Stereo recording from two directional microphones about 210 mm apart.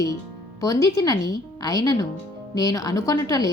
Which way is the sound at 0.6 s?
15° left (ahead or behind).